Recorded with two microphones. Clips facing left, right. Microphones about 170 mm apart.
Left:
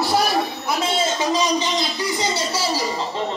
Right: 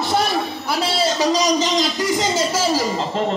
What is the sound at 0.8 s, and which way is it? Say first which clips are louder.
A man's voice: right 3 dB; 35° right (ahead or behind).